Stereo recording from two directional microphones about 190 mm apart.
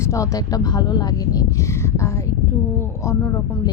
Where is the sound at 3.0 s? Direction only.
15° left (ahead or behind).